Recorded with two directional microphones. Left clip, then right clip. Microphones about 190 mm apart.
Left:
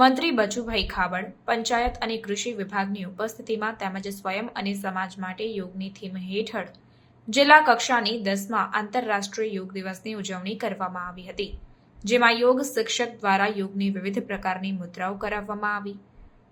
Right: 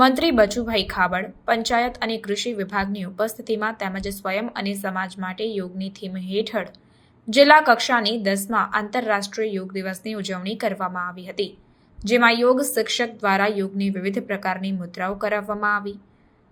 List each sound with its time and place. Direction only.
0.0 s a woman's voice: 15° right (ahead or behind)